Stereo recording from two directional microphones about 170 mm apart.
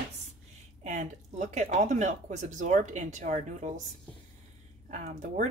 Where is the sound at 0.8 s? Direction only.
45° right (ahead or behind).